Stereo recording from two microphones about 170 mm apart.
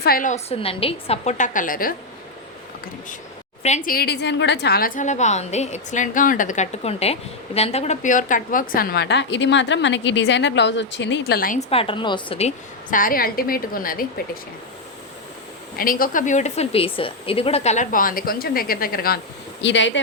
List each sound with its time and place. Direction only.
0.0 s a woman's voice: 55° left (ahead or behind)
3.8 s a woman's voice: 65° left (ahead or behind)
11.7 s a woman's voice: 30° left (ahead or behind)
12.9 s a woman's voice: 55° left (ahead or behind)
15.8 s a woman's voice: 55° left (ahead or behind)
19.6 s speech: 90° left